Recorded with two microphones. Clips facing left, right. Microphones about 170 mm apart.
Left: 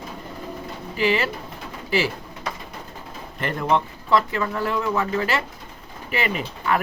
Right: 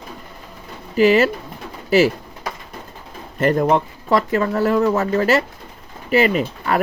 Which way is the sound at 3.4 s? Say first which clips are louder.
Right 6 dB; 45° right (ahead or behind).